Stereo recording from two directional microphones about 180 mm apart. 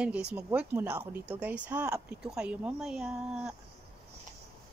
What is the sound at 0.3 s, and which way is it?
Speech, 5° right (ahead or behind).